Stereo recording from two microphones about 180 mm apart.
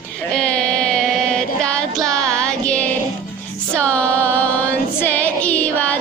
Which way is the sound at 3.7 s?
5° left (ahead or behind).